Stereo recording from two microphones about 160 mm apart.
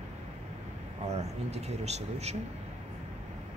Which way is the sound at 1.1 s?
45° right (ahead or behind).